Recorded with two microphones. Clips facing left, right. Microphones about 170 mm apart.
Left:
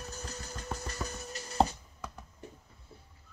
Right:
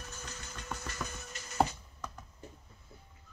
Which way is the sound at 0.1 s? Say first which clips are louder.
Left 4 dB; 35° left (ahead or behind).